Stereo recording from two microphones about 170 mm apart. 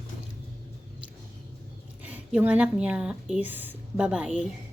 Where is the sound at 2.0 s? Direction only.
10° right (ahead or behind).